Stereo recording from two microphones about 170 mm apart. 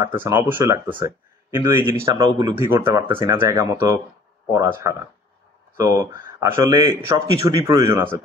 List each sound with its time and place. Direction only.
0.2 s speech: 15° right (ahead or behind)
0.8 s speech: 30° right (ahead or behind)
1.5 s speech: 15° right (ahead or behind)